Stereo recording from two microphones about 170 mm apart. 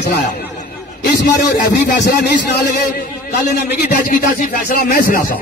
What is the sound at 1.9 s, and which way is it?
A man's voice, 65° left (ahead or behind).